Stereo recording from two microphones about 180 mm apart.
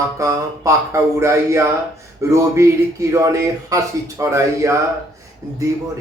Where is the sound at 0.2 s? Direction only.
15° right (ahead or behind).